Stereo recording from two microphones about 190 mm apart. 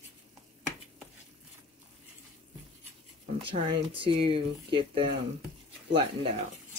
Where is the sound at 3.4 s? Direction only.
30° right (ahead or behind).